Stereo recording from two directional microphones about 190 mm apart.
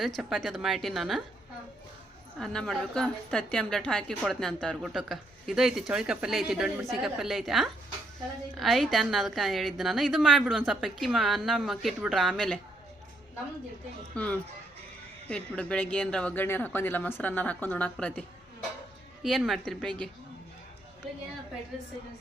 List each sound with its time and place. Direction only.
0.2 s a woman's voice: centre (ahead or behind)
2.4 s a woman's voice: 5° left (ahead or behind)
14.2 s a woman's voice: 5° left (ahead or behind)